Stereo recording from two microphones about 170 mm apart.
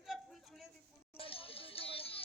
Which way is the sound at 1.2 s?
35° left (ahead or behind).